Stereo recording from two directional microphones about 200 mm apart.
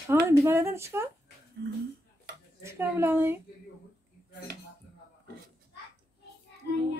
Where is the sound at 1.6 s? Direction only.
55° right (ahead or behind).